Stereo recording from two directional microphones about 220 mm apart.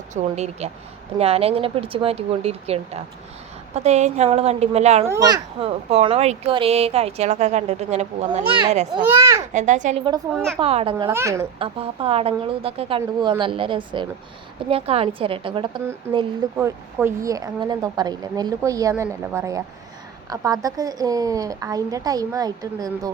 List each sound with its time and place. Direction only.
0.1 s a child's voice: 30° right (ahead or behind)
5.0 s a child's voice: 15° right (ahead or behind)
9.1 s a woman's voice: 10° right (ahead or behind)
9.5 s a woman's voice: 35° right (ahead or behind)
10.3 s a woman's voice: centre (ahead or behind)
10.6 s a child's voice: 25° right (ahead or behind)
10.9 s a woman's voice: 15° right (ahead or behind)
11.6 s a child's voice: 25° right (ahead or behind)
15.8 s a woman's voice: 10° right (ahead or behind)